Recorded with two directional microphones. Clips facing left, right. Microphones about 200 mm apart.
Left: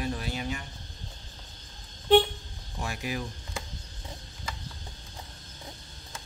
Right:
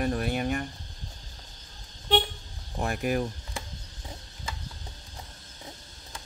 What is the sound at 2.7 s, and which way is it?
Speech, 50° right (ahead or behind).